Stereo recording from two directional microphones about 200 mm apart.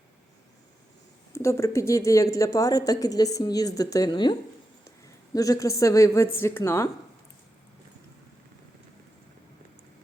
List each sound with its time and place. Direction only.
1.3 s speech: 15° left (ahead or behind)